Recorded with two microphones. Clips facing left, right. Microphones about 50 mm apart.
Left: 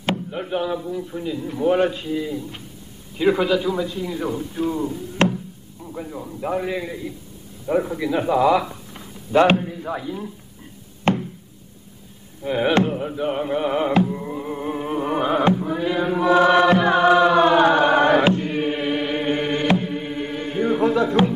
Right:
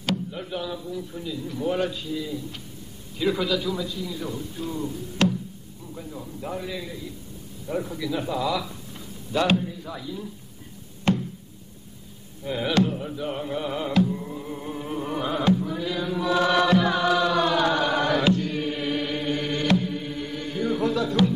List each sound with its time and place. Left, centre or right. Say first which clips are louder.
0.0 s speech: left 4 dB; left
5.2 s knock: left 3 dB; left
5.9 s speech: left 6 dB; left
11.1 s knock: left 3 dB; left
12.4 s music: left 5 dB; left